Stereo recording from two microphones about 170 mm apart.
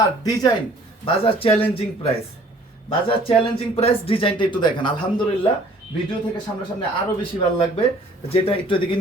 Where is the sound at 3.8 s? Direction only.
35° left (ahead or behind).